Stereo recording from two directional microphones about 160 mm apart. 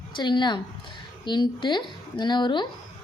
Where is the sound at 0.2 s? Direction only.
30° left (ahead or behind).